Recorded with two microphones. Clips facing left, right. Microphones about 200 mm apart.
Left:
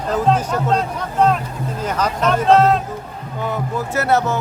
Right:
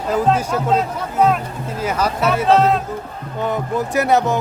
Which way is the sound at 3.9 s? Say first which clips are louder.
Right 1 dB; 15° right (ahead or behind).